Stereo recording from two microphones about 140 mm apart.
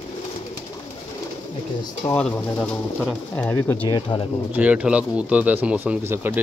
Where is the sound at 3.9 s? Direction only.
35° left (ahead or behind).